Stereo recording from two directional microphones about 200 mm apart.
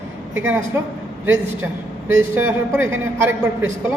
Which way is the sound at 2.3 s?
10° right (ahead or behind).